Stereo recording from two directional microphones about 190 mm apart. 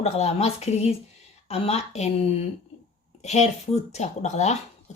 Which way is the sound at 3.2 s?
35° left (ahead or behind).